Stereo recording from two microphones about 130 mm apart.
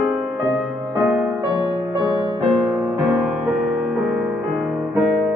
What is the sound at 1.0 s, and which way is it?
Music, 10° right (ahead or behind).